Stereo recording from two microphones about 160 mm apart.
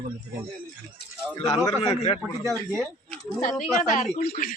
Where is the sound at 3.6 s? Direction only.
55° left (ahead or behind).